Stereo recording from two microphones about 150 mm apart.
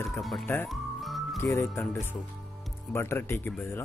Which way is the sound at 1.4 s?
15° left (ahead or behind).